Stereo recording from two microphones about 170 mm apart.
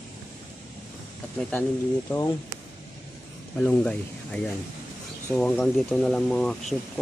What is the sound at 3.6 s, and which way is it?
Speech, 10° left (ahead or behind).